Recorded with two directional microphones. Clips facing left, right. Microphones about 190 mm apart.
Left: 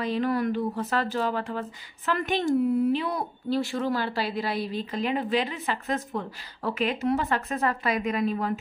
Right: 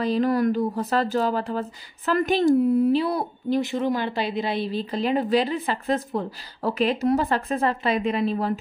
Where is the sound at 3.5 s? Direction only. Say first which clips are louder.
Right 3 dB; 20° right (ahead or behind).